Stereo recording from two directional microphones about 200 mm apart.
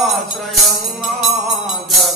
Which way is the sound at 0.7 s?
Centre (ahead or behind).